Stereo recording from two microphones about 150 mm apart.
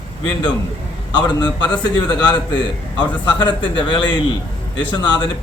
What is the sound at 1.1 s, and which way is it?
A man's voice, 30° left (ahead or behind).